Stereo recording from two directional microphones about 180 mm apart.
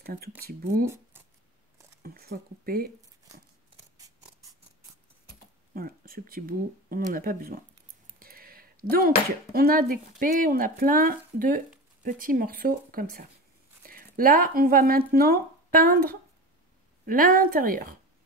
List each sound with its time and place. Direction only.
0.0 s speech: 55° right (ahead or behind)
2.0 s speech: 60° right (ahead or behind)
5.8 s speech: 55° right (ahead or behind)
8.2 s a sound: 55° right (ahead or behind)
9.5 s speech: 55° right (ahead or behind)
17.0 s speech: 50° right (ahead or behind)